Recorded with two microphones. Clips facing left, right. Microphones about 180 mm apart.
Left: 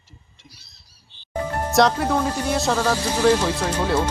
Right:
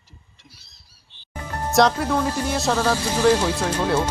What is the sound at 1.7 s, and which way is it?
Music, centre (ahead or behind).